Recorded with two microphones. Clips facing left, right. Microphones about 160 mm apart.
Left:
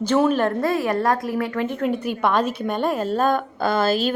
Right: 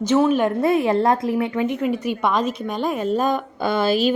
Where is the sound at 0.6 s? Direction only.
20° right (ahead or behind).